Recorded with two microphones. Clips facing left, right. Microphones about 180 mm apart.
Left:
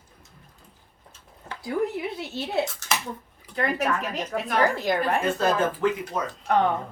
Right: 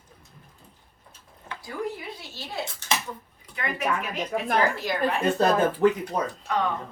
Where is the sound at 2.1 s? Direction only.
60° left (ahead or behind).